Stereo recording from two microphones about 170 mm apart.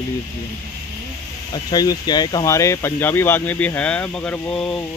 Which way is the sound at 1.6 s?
25° left (ahead or behind).